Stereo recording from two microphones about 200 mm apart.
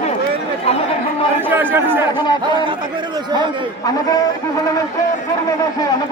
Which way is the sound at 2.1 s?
20° left (ahead or behind).